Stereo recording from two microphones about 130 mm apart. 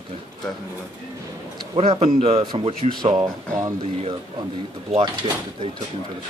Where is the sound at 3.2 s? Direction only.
20° right (ahead or behind).